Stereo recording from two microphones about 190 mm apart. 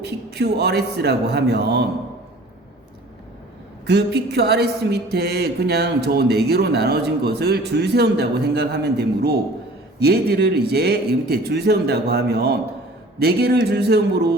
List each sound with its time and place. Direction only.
0.0 s speech: 60° right (ahead or behind)
3.8 s speech: 60° right (ahead or behind)